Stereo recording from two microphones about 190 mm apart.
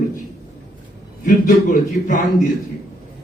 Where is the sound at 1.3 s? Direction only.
40° left (ahead or behind).